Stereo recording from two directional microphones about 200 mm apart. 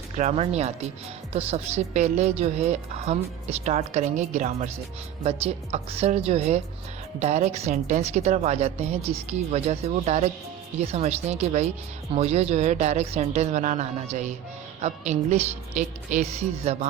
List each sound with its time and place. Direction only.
0.2 s speech: 35° right (ahead or behind)